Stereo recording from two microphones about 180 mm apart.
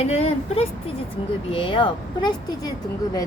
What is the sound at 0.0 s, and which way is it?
Speech, 35° left (ahead or behind).